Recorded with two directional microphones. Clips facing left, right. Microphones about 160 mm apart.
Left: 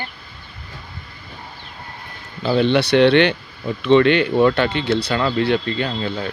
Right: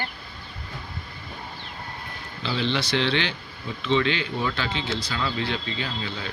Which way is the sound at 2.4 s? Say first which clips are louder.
Left 10 dB; 50° left (ahead or behind).